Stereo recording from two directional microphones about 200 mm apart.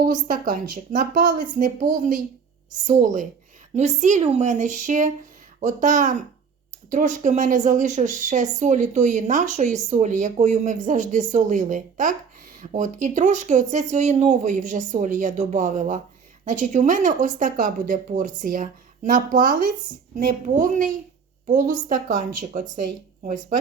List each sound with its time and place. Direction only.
0.0 s a woman's voice: 45° right (ahead or behind)